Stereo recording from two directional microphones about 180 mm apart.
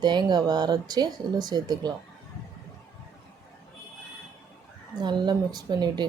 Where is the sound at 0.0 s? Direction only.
25° right (ahead or behind).